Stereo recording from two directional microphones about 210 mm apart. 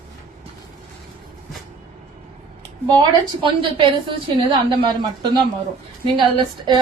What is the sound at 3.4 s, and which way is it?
A woman's voice, 25° right (ahead or behind).